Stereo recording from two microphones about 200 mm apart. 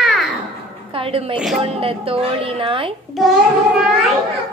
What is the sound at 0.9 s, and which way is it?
A woman's voice, 25° right (ahead or behind).